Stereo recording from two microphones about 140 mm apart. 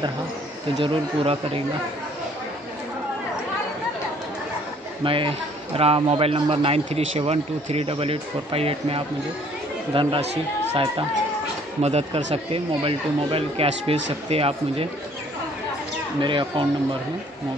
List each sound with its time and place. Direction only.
0.7 s speech: 40° right (ahead or behind)
5.0 s a man's voice: 40° right (ahead or behind)
16.2 s speech: 35° right (ahead or behind)